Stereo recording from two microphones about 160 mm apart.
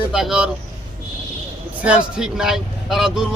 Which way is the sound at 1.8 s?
5° right (ahead or behind).